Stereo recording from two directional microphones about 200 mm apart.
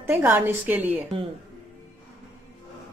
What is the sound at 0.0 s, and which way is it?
A woman's voice, 10° right (ahead or behind).